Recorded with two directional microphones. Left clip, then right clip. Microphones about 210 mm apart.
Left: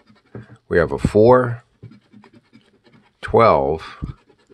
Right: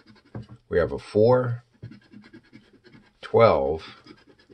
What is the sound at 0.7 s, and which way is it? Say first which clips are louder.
Speech: left 7 dB; 45° left (ahead or behind).